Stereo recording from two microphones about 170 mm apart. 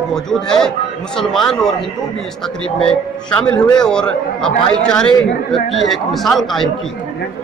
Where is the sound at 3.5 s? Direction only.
25° left (ahead or behind).